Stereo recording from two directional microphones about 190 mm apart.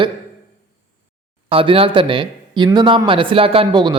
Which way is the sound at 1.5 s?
30° right (ahead or behind).